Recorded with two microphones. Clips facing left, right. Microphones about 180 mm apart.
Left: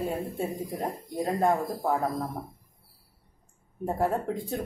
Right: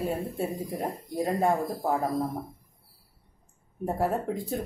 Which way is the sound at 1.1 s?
Centre (ahead or behind).